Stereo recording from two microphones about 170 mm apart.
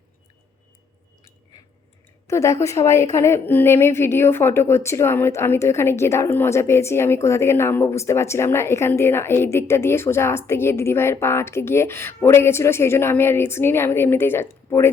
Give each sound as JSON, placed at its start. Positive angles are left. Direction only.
{"t": 2.2, "sound": "a woman's voice", "side_deg": 20}